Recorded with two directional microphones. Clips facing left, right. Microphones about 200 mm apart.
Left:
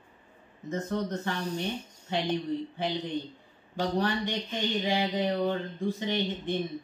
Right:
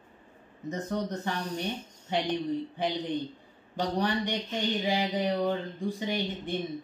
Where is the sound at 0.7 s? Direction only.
15° right (ahead or behind).